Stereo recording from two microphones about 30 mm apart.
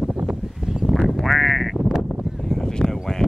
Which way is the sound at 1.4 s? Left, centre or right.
Centre.